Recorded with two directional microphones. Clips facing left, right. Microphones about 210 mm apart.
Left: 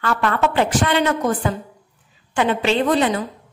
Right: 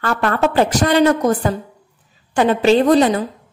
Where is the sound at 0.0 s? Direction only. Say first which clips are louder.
Right 2 dB; 40° right (ahead or behind).